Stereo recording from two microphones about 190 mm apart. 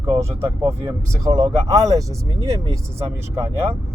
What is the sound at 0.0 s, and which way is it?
Speech, 15° right (ahead or behind).